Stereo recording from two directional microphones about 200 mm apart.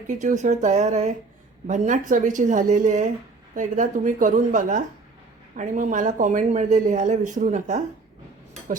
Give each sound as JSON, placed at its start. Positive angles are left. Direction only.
{"t": 0.1, "sound": "speech", "side_deg": -40}